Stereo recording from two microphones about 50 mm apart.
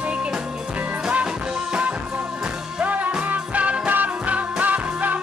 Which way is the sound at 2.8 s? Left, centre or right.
Right.